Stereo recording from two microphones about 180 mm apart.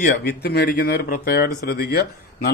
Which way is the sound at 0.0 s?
50° left (ahead or behind).